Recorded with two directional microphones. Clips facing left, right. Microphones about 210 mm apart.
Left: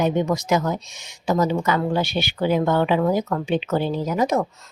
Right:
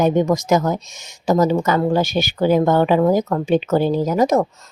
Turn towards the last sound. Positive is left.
turn(degrees=-40)  # may be behind; listen again after turning